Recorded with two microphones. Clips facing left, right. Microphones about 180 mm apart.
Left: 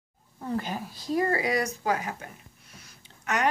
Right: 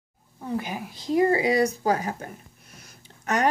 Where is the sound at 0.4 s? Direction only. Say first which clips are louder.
Right 1 dB; 10° right (ahead or behind).